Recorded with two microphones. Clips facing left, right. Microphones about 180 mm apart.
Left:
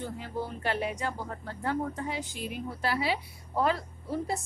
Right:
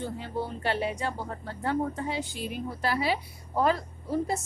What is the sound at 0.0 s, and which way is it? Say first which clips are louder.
A woman's voice: right 2 dB; 25° right (ahead or behind).